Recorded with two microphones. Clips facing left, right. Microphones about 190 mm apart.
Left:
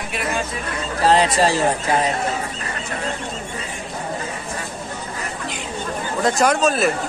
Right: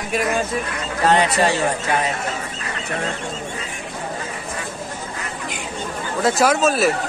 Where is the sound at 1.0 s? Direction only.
30° left (ahead or behind).